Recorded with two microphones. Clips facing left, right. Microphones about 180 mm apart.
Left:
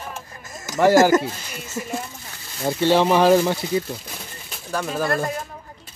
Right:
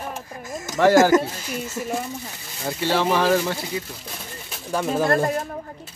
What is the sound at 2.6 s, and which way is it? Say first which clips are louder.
Speech: left 4 dB; 20° left (ahead or behind).